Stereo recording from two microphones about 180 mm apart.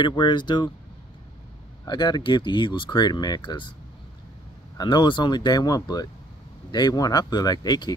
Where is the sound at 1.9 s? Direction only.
25° left (ahead or behind).